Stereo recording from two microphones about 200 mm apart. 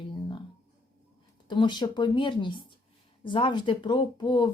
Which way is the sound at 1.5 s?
25° left (ahead or behind).